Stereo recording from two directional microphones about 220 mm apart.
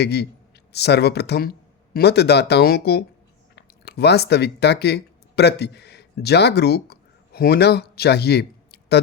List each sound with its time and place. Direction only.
0.0 s speech: 50° left (ahead or behind)